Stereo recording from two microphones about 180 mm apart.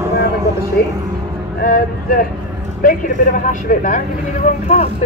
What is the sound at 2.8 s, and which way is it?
Vehicle, 50° left (ahead or behind).